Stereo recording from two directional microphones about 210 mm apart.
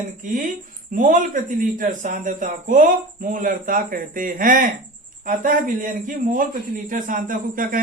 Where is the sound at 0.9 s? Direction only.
40° right (ahead or behind).